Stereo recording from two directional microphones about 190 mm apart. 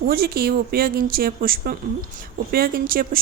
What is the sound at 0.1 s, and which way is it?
Speech, 50° right (ahead or behind).